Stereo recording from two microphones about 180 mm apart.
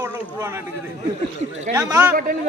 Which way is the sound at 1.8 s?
15° right (ahead or behind).